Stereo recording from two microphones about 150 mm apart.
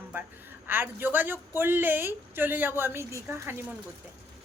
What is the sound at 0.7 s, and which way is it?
A woman's voice, 15° right (ahead or behind).